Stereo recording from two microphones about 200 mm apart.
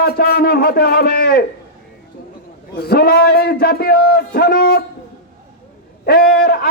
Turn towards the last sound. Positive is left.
turn(degrees=50)  # may be behind; listen again after turning